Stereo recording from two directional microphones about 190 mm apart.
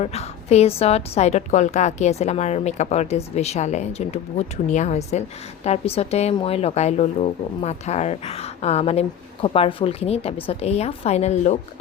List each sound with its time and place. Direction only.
0.0 s a woman's voice: 35° left (ahead or behind)